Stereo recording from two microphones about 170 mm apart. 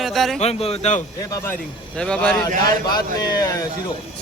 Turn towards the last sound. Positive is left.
turn(degrees=20)  # may be behind; listen again after turning